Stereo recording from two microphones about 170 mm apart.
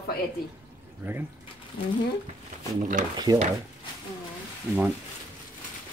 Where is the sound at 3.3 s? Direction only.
25° right (ahead or behind).